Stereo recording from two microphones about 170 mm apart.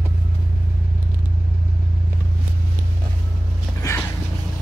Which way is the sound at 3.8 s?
20° left (ahead or behind).